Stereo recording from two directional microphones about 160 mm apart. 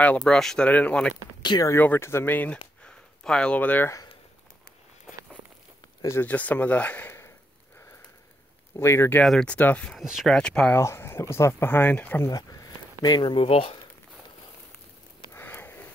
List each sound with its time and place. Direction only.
0.0 s speech: 5° left (ahead or behind)
1.4 s speech: 25° left (ahead or behind)
6.0 s speech: 10° left (ahead or behind)
8.7 s speech: 15° left (ahead or behind)
9.2 s speech: 5° left (ahead or behind)
10.8 s speech: 15° left (ahead or behind)
12.3 s speech: 25° left (ahead or behind)
15.3 s sniff: 15° left (ahead or behind)